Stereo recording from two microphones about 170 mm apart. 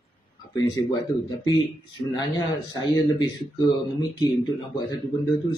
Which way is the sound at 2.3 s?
25° left (ahead or behind).